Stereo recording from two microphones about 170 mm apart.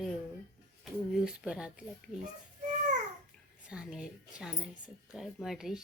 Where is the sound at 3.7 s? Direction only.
5° right (ahead or behind).